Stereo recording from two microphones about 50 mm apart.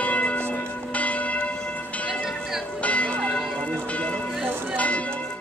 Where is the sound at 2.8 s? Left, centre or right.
Left.